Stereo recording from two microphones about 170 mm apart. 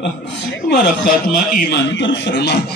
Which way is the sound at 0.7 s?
55° left (ahead or behind).